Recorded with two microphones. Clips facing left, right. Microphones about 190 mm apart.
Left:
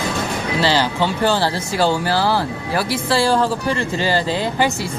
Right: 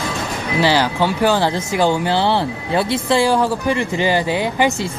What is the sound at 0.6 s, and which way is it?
Speech, 15° right (ahead or behind).